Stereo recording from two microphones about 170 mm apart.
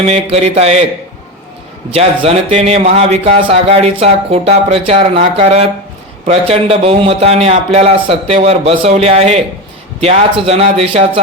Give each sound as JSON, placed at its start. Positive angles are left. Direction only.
{"t": 0.1, "sound": "a man's voice", "side_deg": -40}
{"t": 1.9, "sound": "a man's voice", "side_deg": -35}